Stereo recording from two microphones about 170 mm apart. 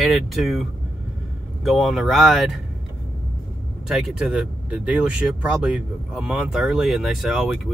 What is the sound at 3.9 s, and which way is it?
Speech, 5° right (ahead or behind).